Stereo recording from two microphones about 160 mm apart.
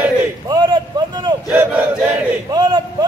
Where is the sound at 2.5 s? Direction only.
25° right (ahead or behind).